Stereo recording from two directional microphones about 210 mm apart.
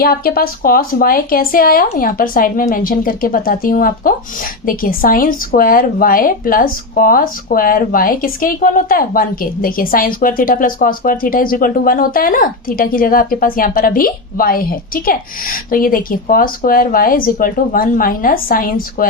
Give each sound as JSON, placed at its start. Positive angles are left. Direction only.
{"t": 0.0, "sound": "speech", "side_deg": 45}